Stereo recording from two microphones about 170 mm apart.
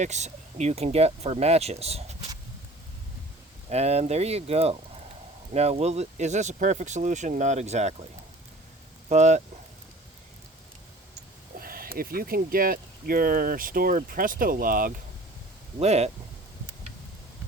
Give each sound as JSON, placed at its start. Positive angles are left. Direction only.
{"t": 0.0, "sound": "speech", "side_deg": -40}
{"t": 3.7, "sound": "speech", "side_deg": -40}
{"t": 9.0, "sound": "speech", "side_deg": -45}
{"t": 11.6, "sound": "speech", "side_deg": -60}
{"t": 15.8, "sound": "speech", "side_deg": -40}